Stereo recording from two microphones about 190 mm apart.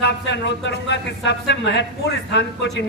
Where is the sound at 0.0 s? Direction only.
65° left (ahead or behind).